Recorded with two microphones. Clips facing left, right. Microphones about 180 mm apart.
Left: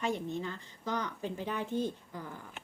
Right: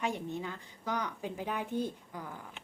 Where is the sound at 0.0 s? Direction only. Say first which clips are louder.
Left 1 dB; 15° right (ahead or behind).